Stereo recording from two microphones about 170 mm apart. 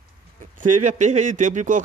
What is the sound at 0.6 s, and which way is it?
Speech, 45° right (ahead or behind).